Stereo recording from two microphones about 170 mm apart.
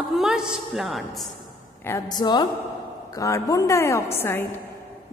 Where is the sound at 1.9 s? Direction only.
20° left (ahead or behind).